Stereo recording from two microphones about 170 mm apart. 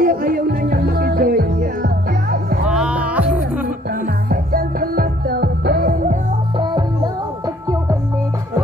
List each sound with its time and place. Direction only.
0.0 s music: 60° right (ahead or behind)
2.6 s music: 5° right (ahead or behind)
3.6 s music: 55° right (ahead or behind)
6.5 s music: 30° right (ahead or behind)